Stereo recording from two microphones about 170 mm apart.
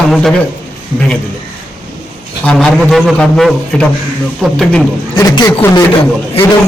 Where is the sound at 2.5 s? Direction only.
Centre (ahead or behind).